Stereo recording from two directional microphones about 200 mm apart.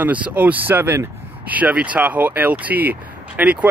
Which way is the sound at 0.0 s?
5° right (ahead or behind).